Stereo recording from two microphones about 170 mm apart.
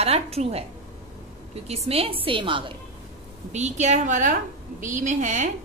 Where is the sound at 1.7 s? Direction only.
35° right (ahead or behind).